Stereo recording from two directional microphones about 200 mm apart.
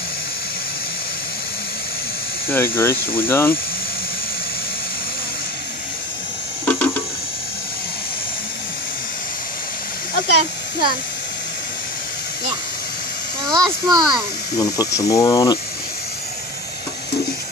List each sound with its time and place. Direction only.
2.4 s speech: 10° left (ahead or behind)
6.7 s a sound: 5° left (ahead or behind)
13.5 s a child's voice: 20° right (ahead or behind)
14.6 s speech: 15° left (ahead or behind)